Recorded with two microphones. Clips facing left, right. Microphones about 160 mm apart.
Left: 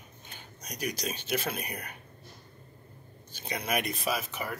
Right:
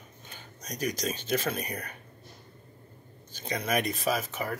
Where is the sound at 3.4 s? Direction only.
45° right (ahead or behind).